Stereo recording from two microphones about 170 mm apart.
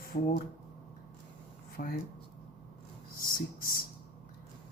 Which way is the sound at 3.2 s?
55° left (ahead or behind).